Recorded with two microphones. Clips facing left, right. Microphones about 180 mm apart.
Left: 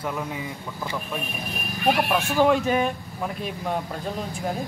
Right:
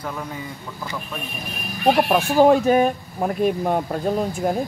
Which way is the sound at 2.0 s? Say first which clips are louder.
Right 6 dB; 40° right (ahead or behind).